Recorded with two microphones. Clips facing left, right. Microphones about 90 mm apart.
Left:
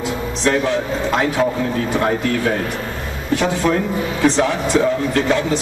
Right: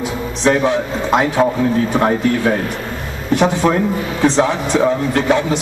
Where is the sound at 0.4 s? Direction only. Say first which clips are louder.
Right 4 dB; 20° right (ahead or behind).